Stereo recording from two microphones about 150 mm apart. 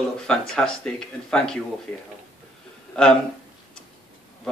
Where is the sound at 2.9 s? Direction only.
5° left (ahead or behind).